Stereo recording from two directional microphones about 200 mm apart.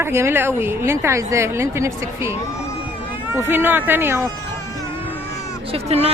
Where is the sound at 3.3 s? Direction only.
10° right (ahead or behind).